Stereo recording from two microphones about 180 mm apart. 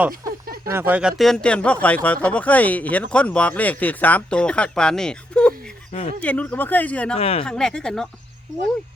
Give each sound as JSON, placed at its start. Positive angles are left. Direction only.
{"t": 0.6, "sound": "speech", "side_deg": -15}
{"t": 5.9, "sound": "speech", "side_deg": 35}
{"t": 6.2, "sound": "speech", "side_deg": 10}
{"t": 7.2, "sound": "speech", "side_deg": 35}
{"t": 7.4, "sound": "speech", "side_deg": 5}